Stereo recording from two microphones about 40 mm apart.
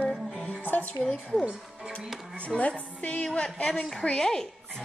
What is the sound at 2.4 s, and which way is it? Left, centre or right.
Speech, left.